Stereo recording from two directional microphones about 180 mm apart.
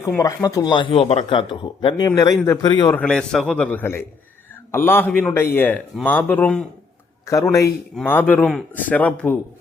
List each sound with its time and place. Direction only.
0.0 s speech: 15° left (ahead or behind)
2.9 s a man's voice: 5° left (ahead or behind)
7.3 s a man's voice: 15° left (ahead or behind)